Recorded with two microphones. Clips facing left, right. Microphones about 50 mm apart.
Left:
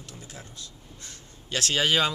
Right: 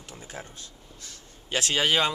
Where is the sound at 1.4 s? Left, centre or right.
Centre.